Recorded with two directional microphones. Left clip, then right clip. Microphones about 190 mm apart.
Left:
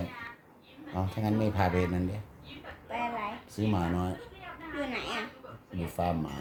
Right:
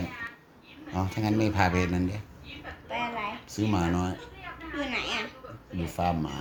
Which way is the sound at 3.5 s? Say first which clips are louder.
Right 4 dB; 10° right (ahead or behind).